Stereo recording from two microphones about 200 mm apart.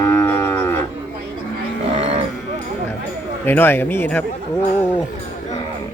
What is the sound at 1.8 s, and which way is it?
Cattle, 30° right (ahead or behind).